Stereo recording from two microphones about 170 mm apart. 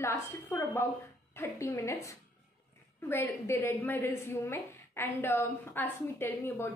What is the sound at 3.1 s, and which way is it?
A woman's voice, 15° left (ahead or behind).